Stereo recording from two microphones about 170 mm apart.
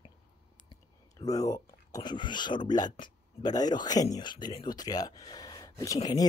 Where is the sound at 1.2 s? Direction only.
20° left (ahead or behind).